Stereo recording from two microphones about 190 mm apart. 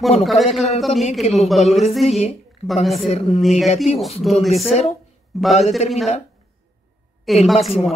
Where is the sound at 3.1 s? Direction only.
35° left (ahead or behind).